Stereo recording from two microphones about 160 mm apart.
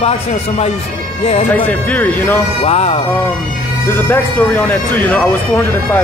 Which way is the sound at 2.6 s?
40° left (ahead or behind).